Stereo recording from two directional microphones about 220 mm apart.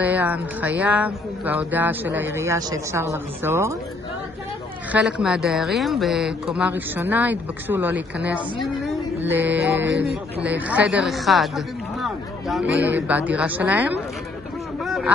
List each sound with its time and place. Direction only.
0.0 s speech: 5° right (ahead or behind)
4.9 s speech: 5° right (ahead or behind)
8.8 s a sound: 10° right (ahead or behind)
9.5 s speech: 5° right (ahead or behind)
9.8 s speech: 50° right (ahead or behind)
10.4 s speech: 5° right (ahead or behind)
14.9 s a sound: centre (ahead or behind)